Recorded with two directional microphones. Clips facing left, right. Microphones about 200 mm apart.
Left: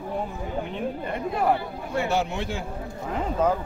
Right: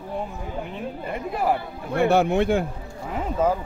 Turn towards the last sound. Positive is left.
turn(degrees=-5)  # may be behind; listen again after turning